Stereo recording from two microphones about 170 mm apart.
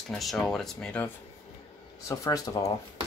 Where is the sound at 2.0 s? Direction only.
20° left (ahead or behind).